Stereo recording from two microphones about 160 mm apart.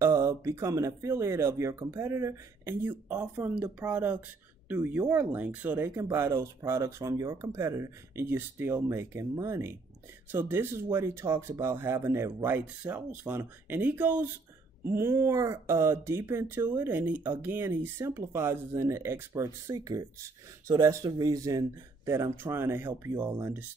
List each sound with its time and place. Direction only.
0.0 s speech: 15° right (ahead or behind)